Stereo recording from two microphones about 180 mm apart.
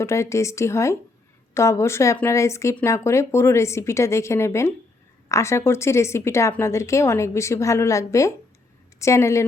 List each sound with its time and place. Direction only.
0.0 s a woman's voice: 15° left (ahead or behind)